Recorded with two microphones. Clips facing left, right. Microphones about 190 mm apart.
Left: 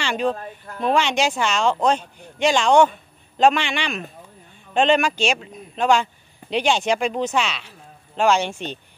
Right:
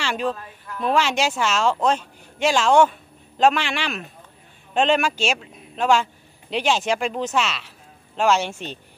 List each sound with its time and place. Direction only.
0.0 s speech: 5° right (ahead or behind)
0.3 s speech: 45° left (ahead or behind)
0.8 s a woman's voice: centre (ahead or behind)